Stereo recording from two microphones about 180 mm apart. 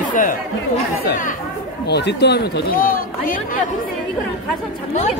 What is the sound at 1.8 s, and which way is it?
A man's voice, 70° left (ahead or behind).